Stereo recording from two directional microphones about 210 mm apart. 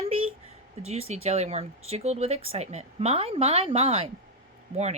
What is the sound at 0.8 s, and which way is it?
A woman's voice, 30° right (ahead or behind).